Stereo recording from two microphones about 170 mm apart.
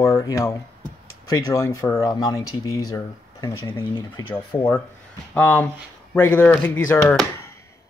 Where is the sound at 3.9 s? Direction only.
30° left (ahead or behind).